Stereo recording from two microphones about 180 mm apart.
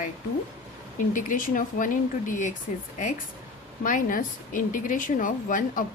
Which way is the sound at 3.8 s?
50° left (ahead or behind).